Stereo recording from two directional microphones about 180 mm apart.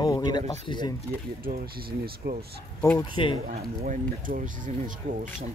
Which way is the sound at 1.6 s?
55° right (ahead or behind).